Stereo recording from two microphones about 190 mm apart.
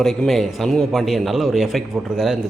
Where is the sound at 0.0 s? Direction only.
Centre (ahead or behind).